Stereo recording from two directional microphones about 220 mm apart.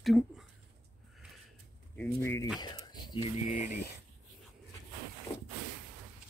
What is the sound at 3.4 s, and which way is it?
Speech, 35° left (ahead or behind).